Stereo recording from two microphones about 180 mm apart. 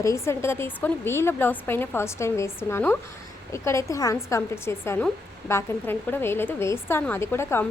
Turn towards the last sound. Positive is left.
turn(degrees=15)  # may be behind; listen again after turning